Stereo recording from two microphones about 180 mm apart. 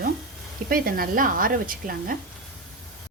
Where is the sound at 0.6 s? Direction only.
55° right (ahead or behind).